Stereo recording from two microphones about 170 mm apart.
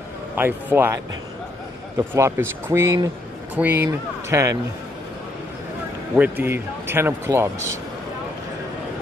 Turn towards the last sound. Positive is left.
turn(degrees=-15)  # may be behind; listen again after turning